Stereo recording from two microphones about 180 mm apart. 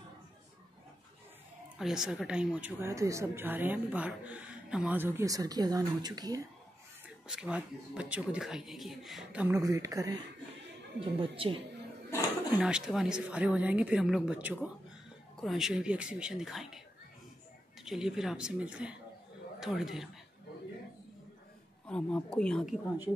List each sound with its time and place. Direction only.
1.8 s speech: 5° right (ahead or behind); by 6.4 s 20° right (ahead or behind)
7.2 s speech: 5° right (ahead or behind)
9.6 s speech: 20° right (ahead or behind)
11.0 s speech: 30° right (ahead or behind)
12.5 s speech: 5° right (ahead or behind)
17.8 s speech: centre (ahead or behind)
21.8 s speech: 5° left (ahead or behind)